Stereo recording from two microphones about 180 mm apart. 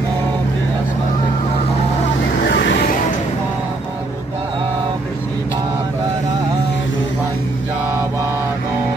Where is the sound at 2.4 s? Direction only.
75° left (ahead or behind).